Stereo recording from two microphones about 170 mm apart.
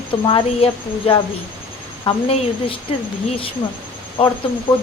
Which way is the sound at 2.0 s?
30° left (ahead or behind).